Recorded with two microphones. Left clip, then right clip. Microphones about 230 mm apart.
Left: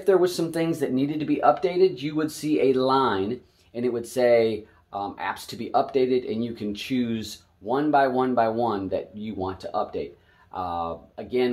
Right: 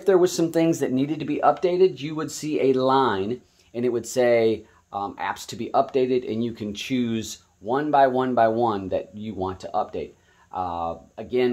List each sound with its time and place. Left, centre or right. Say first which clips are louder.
0.0 s speech: right 2 dB; right